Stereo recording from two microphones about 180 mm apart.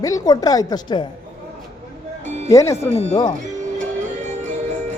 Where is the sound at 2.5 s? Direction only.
15° left (ahead or behind).